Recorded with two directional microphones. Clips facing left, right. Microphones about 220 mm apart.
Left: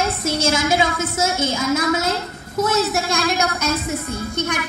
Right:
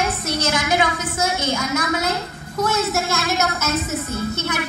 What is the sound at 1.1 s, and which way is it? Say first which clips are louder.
Speech: left 1 dB; 5° left (ahead or behind).